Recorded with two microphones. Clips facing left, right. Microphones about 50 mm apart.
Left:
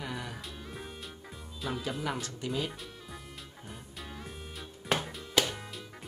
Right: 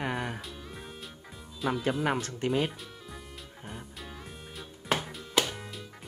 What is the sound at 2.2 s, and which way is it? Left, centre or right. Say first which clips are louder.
Speech: right 6 dB; right.